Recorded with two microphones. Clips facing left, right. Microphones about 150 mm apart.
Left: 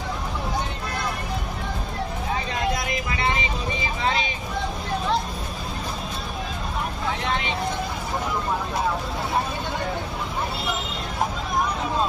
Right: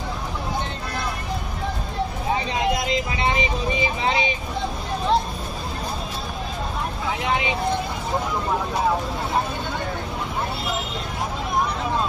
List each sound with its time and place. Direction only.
4.0 s vehicle: 20° right (ahead or behind)